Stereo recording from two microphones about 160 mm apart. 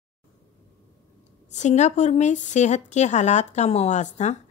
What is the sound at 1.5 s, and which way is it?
A woman's voice, 45° left (ahead or behind).